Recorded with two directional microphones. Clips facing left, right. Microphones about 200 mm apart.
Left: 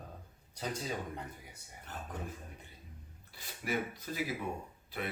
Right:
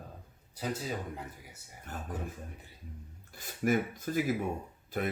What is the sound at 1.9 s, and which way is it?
Speech, 45° right (ahead or behind).